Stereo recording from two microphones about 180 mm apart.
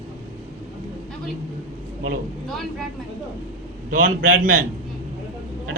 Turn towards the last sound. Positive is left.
turn(degrees=-50)  # may be behind; listen again after turning